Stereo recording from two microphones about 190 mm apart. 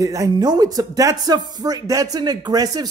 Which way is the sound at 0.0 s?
20° right (ahead or behind).